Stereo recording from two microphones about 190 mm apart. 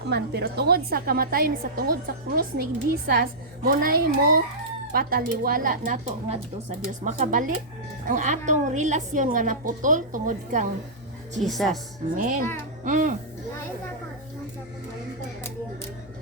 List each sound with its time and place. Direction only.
0.1 s a woman's voice: 55° right (ahead or behind); by 10.7 s 40° right (ahead or behind)
11.3 s a woman's voice: centre (ahead or behind)
12.1 s a woman's voice: 45° right (ahead or behind)